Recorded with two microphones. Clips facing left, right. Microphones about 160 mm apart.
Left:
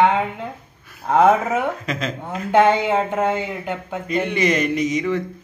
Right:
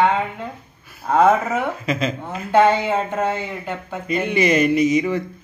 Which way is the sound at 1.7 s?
5° right (ahead or behind).